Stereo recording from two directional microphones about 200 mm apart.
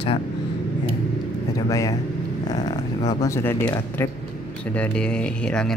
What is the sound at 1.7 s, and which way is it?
Speech, 15° left (ahead or behind).